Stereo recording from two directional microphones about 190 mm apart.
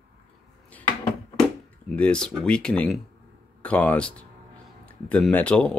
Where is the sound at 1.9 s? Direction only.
5° left (ahead or behind).